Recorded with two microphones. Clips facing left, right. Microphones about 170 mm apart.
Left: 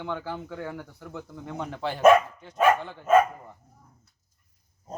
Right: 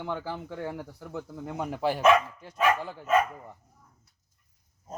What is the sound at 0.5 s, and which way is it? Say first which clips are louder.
Speech: right 1 dB; 25° right (ahead or behind).